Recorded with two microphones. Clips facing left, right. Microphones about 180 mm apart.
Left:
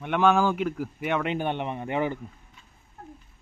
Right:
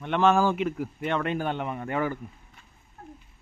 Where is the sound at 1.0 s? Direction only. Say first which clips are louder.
Left 1 dB; 15° left (ahead or behind).